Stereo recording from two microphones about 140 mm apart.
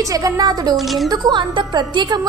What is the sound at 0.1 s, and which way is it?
A woman's voice, 25° right (ahead or behind).